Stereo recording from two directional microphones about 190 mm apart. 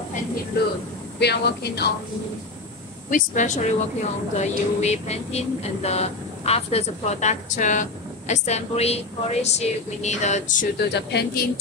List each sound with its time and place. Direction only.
1.2 s speech: 60° left (ahead or behind)
3.1 s a woman's voice: 40° left (ahead or behind)
10.9 s speech: 60° left (ahead or behind)